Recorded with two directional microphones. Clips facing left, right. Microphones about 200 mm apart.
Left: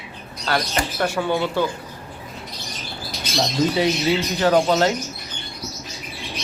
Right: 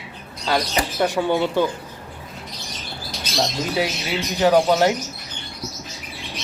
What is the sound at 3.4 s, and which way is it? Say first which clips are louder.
Speech: left 3 dB; 5° right (ahead or behind).